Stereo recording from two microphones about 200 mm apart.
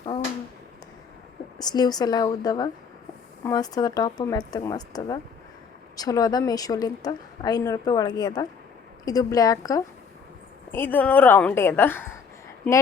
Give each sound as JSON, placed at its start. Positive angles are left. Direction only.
{"t": 1.5, "sound": "a woman's voice", "side_deg": 20}